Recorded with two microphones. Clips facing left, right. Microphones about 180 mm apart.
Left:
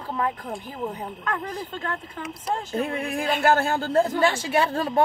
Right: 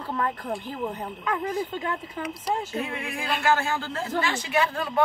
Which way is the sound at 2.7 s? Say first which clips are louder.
Left 5 dB; 50° left (ahead or behind).